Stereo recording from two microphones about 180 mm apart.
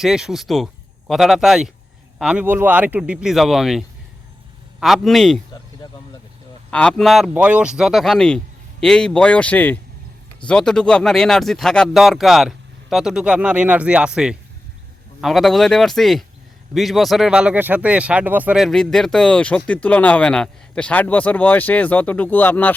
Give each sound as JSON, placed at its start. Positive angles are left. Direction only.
{"t": 0.0, "sound": "speech", "side_deg": -5}
{"t": 6.7, "sound": "speech", "side_deg": 5}